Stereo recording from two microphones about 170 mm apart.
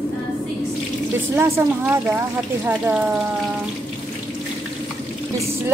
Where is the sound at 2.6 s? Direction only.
10° right (ahead or behind).